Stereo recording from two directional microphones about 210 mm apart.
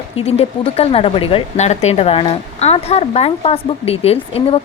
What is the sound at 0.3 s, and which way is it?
Speech, 30° left (ahead or behind).